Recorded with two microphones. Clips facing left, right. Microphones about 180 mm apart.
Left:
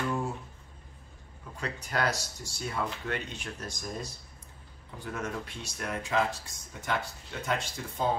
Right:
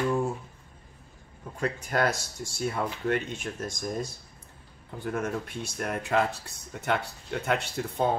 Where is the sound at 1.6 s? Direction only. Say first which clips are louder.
Right 4 dB; 50° right (ahead or behind).